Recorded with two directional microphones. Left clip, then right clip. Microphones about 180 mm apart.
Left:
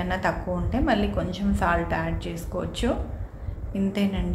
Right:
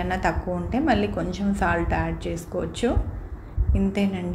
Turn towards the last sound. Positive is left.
turn(degrees=-5)  # may be behind; listen again after turning